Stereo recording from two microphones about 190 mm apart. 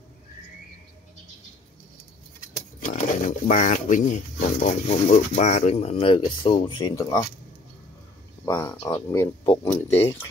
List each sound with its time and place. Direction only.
2.9 s speech: 40° left (ahead or behind); by 7.2 s 15° left (ahead or behind)
8.5 s speech: 15° left (ahead or behind)